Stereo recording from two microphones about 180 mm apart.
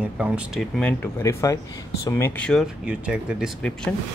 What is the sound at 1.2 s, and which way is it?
Speech, 20° left (ahead or behind).